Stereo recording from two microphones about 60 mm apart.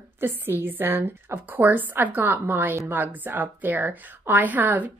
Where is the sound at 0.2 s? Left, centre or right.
Right.